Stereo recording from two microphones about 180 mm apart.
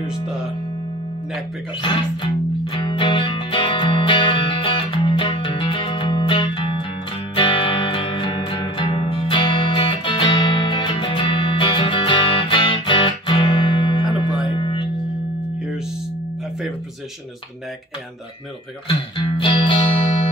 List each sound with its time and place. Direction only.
0.0 s speech: 5° right (ahead or behind)
2.6 s music: 30° left (ahead or behind)
18.9 s music: 30° left (ahead or behind)